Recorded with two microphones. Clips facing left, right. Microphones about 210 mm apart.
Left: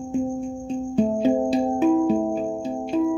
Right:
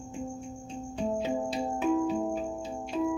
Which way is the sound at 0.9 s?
35° left (ahead or behind).